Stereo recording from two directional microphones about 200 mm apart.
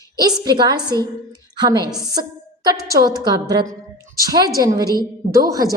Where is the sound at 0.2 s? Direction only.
20° right (ahead or behind).